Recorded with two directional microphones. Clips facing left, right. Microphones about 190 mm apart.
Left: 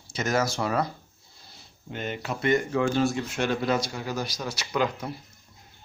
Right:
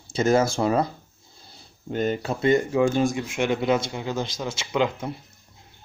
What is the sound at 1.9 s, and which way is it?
Speech, 40° right (ahead or behind).